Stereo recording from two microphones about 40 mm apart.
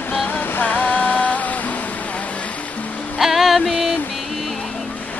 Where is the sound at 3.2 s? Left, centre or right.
Centre.